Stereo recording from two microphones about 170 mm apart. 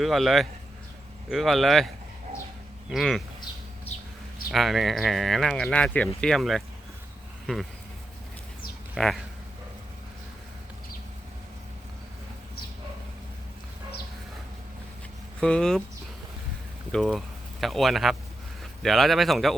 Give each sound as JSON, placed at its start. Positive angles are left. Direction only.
{"t": 0.0, "sound": "speech", "side_deg": 0}
{"t": 2.9, "sound": "speech", "side_deg": 0}
{"t": 3.9, "sound": "a sound", "side_deg": 35}
{"t": 4.5, "sound": "speech", "side_deg": 0}
{"t": 9.0, "sound": "speech", "side_deg": 0}
{"t": 15.4, "sound": "speech", "side_deg": 5}
{"t": 16.9, "sound": "speech", "side_deg": 0}